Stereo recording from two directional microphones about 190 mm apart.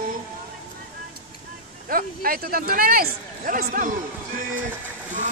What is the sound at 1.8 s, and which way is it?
Speech, 50° right (ahead or behind).